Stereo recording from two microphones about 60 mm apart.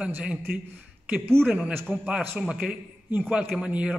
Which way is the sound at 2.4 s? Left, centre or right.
Centre.